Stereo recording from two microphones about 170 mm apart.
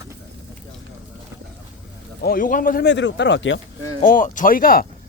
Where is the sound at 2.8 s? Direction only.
90° left.